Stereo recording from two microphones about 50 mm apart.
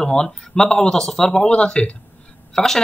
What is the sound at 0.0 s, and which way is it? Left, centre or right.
Speech, centre.